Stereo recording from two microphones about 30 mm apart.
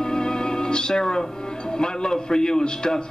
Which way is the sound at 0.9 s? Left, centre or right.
Left.